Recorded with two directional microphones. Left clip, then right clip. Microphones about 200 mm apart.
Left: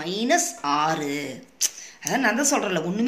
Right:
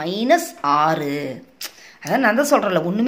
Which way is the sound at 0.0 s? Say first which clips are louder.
Right 5 dB; 55° right (ahead or behind).